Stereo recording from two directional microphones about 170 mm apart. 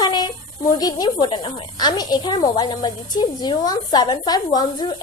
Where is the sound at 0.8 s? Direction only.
25° left (ahead or behind).